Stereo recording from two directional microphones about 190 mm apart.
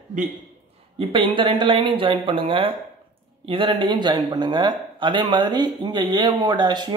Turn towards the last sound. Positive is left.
turn(degrees=-20)  # may be behind; listen again after turning